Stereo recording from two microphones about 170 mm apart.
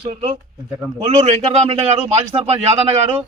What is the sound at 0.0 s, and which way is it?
A man's voice, 40° right (ahead or behind).